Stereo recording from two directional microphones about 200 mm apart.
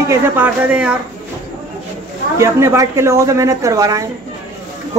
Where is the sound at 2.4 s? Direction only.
15° right (ahead or behind).